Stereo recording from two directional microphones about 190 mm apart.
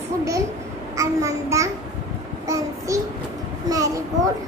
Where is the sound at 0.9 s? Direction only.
15° right (ahead or behind).